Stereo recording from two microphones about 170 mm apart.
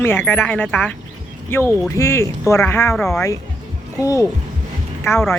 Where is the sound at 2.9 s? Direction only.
5° left (ahead or behind).